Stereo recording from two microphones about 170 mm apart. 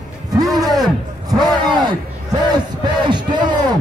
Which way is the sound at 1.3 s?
25° right (ahead or behind).